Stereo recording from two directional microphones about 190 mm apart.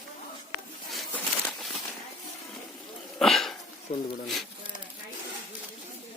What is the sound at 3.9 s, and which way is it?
Speech, 35° left (ahead or behind).